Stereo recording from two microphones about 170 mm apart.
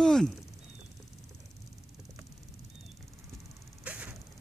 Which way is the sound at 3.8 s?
10° right (ahead or behind).